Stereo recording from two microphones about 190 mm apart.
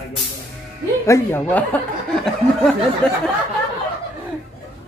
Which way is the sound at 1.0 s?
15° left (ahead or behind).